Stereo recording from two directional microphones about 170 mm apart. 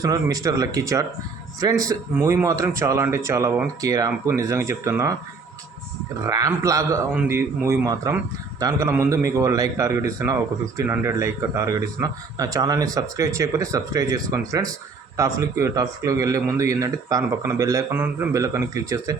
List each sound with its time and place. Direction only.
0.0 s speech: 20° right (ahead or behind)
6.2 s speech: 20° right (ahead or behind)